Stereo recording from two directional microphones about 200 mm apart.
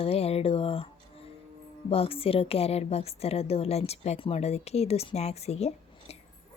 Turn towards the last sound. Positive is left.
turn(degrees=30)  # may be behind; listen again after turning